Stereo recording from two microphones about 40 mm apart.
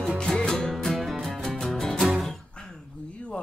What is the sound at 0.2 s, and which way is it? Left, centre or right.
Music, centre.